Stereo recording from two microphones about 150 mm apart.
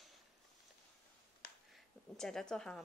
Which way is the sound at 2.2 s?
5° left (ahead or behind).